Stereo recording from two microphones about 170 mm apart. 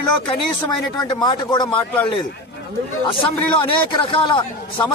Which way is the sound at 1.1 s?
25° left (ahead or behind).